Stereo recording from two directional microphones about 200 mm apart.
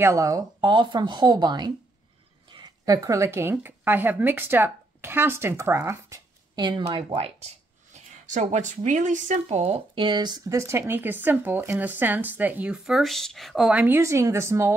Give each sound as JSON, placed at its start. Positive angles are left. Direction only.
{"t": 0.0, "sound": "speech", "side_deg": -15}